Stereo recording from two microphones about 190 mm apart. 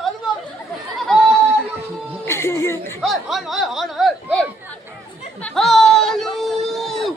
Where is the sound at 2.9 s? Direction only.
Centre (ahead or behind).